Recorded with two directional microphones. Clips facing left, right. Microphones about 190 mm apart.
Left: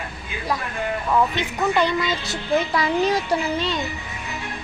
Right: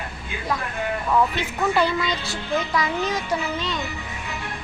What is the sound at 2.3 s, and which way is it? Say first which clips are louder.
A child's voice: left 5 dB; 30° left (ahead or behind).